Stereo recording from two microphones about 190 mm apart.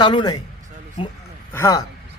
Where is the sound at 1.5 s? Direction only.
15° left (ahead or behind).